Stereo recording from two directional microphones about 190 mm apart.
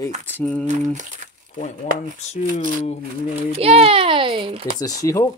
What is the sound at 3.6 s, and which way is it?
A child's voice, 30° right (ahead or behind).